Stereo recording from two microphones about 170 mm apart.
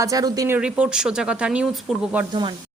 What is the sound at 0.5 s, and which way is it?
Speech, 5° right (ahead or behind).